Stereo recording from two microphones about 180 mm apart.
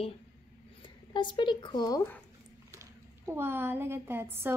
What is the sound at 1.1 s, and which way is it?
Speech, 25° left (ahead or behind).